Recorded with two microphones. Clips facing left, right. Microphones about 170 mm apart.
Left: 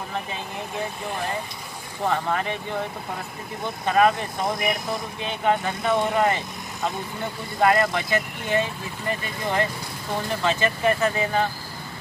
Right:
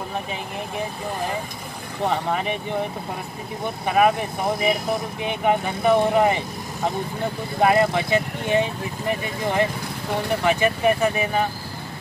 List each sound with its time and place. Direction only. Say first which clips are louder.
2.0 s speech: right 1 dB; 15° right (ahead or behind)
3.8 s speech: right 1 dB; 15° right (ahead or behind)